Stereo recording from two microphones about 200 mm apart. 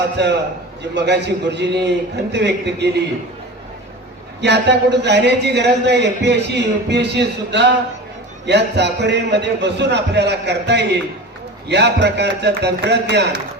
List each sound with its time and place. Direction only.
0.2 s a man's voice: 60° right (ahead or behind)
4.4 s a man's voice: 60° right (ahead or behind)